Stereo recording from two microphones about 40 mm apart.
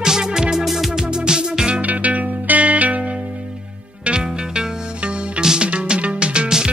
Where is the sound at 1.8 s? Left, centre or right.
Right.